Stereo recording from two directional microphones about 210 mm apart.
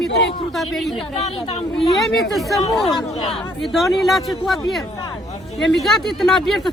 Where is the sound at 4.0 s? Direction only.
Centre (ahead or behind).